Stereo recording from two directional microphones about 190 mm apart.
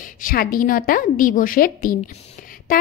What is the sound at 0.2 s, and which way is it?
A woman's voice, 45° left (ahead or behind).